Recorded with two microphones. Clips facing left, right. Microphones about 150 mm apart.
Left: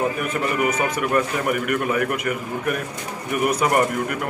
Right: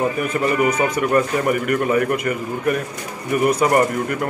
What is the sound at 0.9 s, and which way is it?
A man's voice, 5° left (ahead or behind).